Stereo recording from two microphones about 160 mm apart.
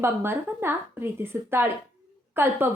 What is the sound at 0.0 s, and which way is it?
A woman's voice, 15° right (ahead or behind).